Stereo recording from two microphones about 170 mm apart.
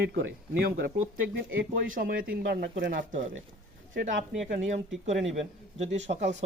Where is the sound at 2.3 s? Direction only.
75° right (ahead or behind); by 3.3 s 50° right (ahead or behind).